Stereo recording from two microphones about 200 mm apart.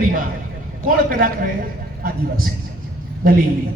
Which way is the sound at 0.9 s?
45° right (ahead or behind).